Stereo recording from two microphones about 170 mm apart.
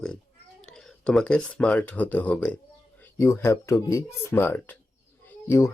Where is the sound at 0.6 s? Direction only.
5° left (ahead or behind).